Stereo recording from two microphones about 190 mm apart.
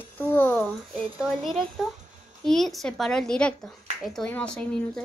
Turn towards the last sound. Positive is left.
turn(degrees=5)  # may be behind; listen again after turning